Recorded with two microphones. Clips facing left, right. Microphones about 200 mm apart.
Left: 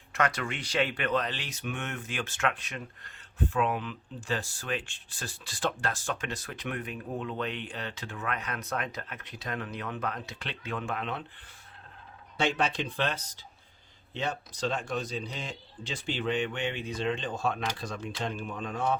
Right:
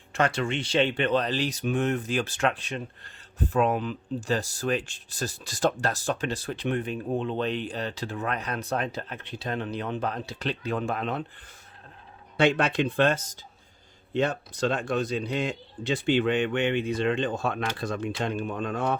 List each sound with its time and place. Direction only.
0.1 s speech: 30° right (ahead or behind)
12.4 s a man's voice: 60° right (ahead or behind)